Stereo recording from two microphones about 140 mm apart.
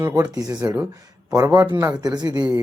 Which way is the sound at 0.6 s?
15° right (ahead or behind).